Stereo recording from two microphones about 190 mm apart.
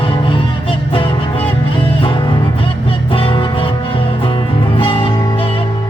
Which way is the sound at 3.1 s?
25° left (ahead or behind).